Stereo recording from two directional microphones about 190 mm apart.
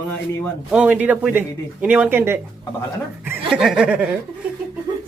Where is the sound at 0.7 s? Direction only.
5° right (ahead or behind).